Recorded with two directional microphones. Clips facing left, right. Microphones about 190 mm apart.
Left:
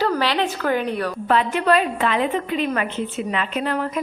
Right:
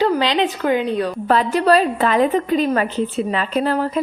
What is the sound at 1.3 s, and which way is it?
A woman's voice, 35° right (ahead or behind).